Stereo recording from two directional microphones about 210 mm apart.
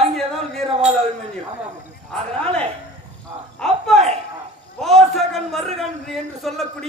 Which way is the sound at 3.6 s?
5° left (ahead or behind).